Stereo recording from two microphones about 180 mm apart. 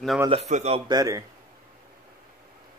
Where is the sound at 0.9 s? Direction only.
20° right (ahead or behind).